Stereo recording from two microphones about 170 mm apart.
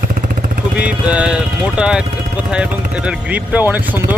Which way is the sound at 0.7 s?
5° right (ahead or behind).